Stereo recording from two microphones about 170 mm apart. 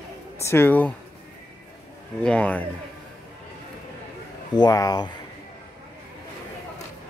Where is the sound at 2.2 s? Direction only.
10° left (ahead or behind).